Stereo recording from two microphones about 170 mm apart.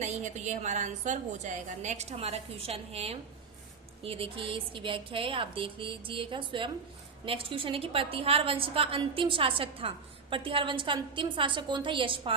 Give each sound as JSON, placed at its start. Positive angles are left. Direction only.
{"t": 0.0, "sound": "a woman's voice", "side_deg": -40}